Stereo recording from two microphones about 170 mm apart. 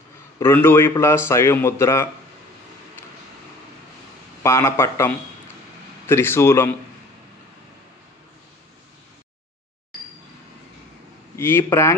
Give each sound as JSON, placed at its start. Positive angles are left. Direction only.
{"t": 0.4, "sound": "a man's voice", "side_deg": 15}
{"t": 4.4, "sound": "a man's voice", "side_deg": 15}
{"t": 11.3, "sound": "a man's voice", "side_deg": 15}